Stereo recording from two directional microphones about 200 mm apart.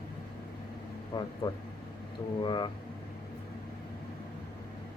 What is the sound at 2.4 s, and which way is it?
Speech, 25° left (ahead or behind).